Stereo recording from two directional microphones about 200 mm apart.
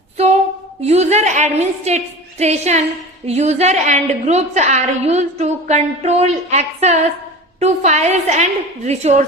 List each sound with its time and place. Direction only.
0.8 s a woman's voice: 35° right (ahead or behind)